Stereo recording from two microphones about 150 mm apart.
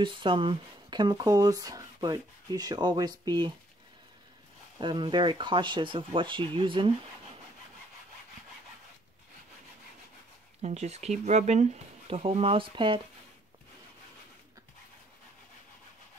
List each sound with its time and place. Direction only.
0.0 s speech: 35° right (ahead or behind)
4.7 s speech: 30° right (ahead or behind)
10.6 s speech: 50° right (ahead or behind)